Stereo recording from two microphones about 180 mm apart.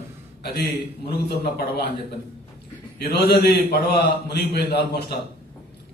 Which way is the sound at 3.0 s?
60° left (ahead or behind).